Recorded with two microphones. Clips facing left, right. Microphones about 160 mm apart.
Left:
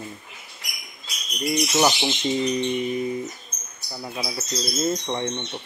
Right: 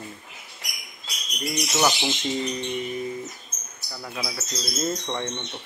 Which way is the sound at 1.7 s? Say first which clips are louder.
Left 1 dB; 15° left (ahead or behind).